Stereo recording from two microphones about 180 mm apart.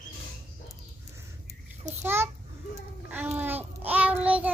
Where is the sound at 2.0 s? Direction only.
10° right (ahead or behind).